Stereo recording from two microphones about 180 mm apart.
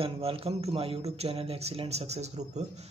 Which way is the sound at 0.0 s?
30° right (ahead or behind).